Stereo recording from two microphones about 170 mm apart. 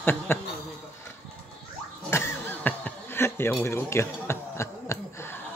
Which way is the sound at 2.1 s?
15° left (ahead or behind).